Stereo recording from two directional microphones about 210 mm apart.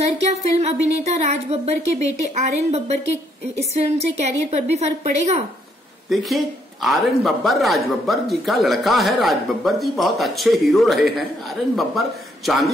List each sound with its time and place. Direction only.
0.2 s a woman's voice: 30° right (ahead or behind)
6.0 s a man's voice: centre (ahead or behind)